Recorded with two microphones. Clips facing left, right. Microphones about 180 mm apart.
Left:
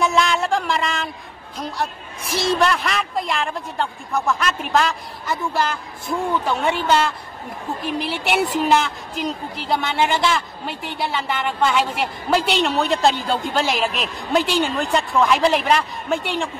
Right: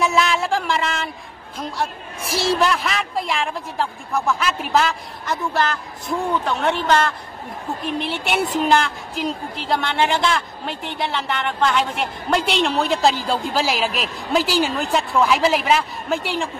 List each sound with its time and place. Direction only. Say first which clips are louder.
0.0 s a woman's voice: even; centre (ahead or behind)
2.2 s a woman's voice: even; 30° right (ahead or behind)
2.6 s a woman's voice: even; centre (ahead or behind)